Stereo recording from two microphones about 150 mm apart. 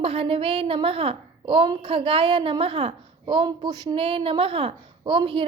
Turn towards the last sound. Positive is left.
turn(degrees=-35)  # may be behind; listen again after turning